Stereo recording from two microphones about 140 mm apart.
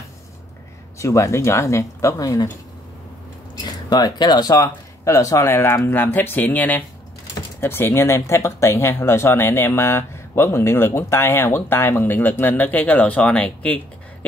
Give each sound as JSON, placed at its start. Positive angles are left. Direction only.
{"t": 0.9, "sound": "speech", "side_deg": 20}
{"t": 3.6, "sound": "speech", "side_deg": 30}